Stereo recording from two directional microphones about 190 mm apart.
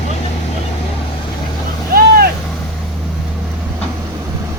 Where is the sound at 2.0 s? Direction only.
50° right (ahead or behind).